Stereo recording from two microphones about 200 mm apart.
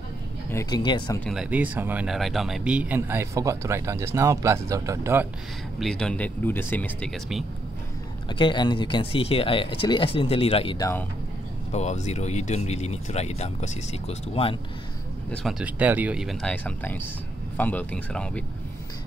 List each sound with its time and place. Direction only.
0.5 s speech: 15° left (ahead or behind)
1.2 s speech: centre (ahead or behind)
5.8 s speech: 5° left (ahead or behind)
8.3 s speech: 25° left (ahead or behind)
15.3 s speech: 5° right (ahead or behind)